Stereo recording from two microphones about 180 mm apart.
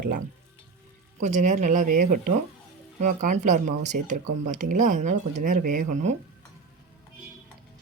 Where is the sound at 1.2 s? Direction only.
45° right (ahead or behind).